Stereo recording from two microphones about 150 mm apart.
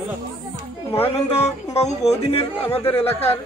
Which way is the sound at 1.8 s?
45° left (ahead or behind).